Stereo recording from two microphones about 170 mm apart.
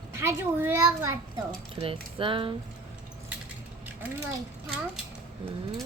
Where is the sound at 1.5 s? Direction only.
30° right (ahead or behind).